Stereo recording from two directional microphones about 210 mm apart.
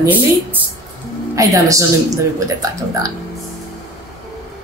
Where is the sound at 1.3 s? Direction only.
15° right (ahead or behind).